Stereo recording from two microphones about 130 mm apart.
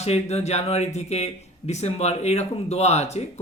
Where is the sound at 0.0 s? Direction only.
55° left (ahead or behind).